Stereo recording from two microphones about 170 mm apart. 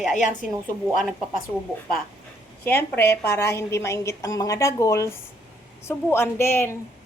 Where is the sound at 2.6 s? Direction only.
15° left (ahead or behind).